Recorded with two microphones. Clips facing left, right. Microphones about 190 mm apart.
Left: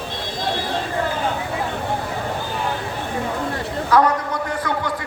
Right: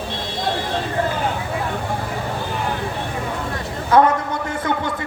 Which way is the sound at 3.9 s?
25° right (ahead or behind).